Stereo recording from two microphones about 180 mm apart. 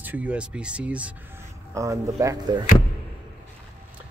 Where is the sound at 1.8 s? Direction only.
15° right (ahead or behind).